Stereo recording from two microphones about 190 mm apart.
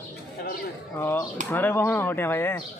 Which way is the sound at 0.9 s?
10° left (ahead or behind).